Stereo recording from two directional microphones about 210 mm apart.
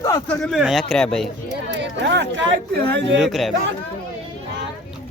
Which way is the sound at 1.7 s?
55° right (ahead or behind).